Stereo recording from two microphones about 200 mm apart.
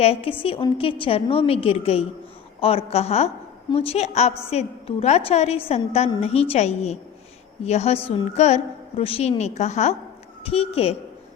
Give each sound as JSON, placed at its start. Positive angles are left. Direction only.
{"t": 0.0, "sound": "a woman's voice", "side_deg": 30}